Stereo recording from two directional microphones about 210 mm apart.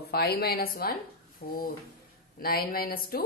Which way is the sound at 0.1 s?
50° left (ahead or behind).